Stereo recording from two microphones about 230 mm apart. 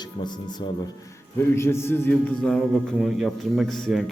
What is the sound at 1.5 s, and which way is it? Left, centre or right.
A man's voice, centre.